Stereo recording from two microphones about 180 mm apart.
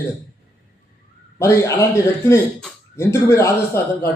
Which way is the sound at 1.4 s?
15° left (ahead or behind).